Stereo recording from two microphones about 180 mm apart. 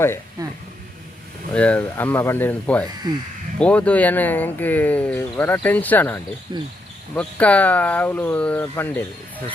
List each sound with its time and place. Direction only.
0.4 s speech: 20° right (ahead or behind)
1.5 s speech: 5° left (ahead or behind)
3.1 s speech: 20° right (ahead or behind)
3.6 s speech: 5° left (ahead or behind)
6.5 s speech: 25° right (ahead or behind)
7.2 s speech: 5° left (ahead or behind)